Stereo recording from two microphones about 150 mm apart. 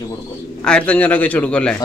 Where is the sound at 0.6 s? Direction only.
5° left (ahead or behind).